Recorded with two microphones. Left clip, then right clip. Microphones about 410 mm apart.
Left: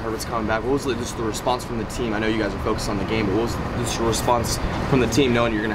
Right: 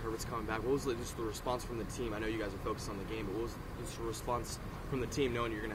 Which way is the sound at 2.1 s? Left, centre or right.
Right.